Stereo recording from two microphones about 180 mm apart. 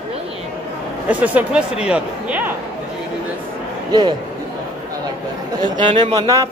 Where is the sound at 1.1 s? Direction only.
10° right (ahead or behind).